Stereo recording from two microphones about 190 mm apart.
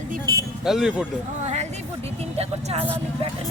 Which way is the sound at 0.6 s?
5° right (ahead or behind).